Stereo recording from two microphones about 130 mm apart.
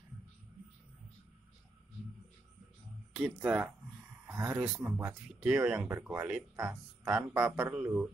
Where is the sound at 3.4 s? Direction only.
15° right (ahead or behind).